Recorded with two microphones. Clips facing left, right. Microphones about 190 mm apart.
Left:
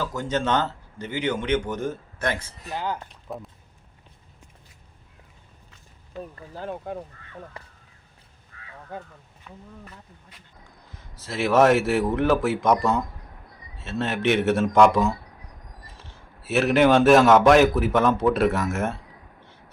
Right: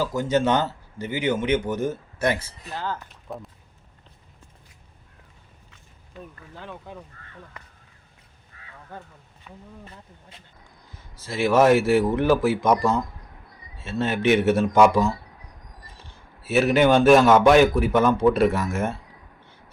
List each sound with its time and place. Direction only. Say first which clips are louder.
0.0 s speech: right 4 dB; 10° right (ahead or behind)
2.6 s speech: left 2 dB; 15° left (ahead or behind)
3.1 s speech: left 1 dB; centre (ahead or behind)
6.1 s speech: left 5 dB; 40° left (ahead or behind)
8.9 s speech: left 4 dB; 15° left (ahead or behind)
9.8 s speech: right 1 dB; 25° right (ahead or behind)
11.2 s a man's voice: even; centre (ahead or behind)
16.4 s a man's voice: even; centre (ahead or behind)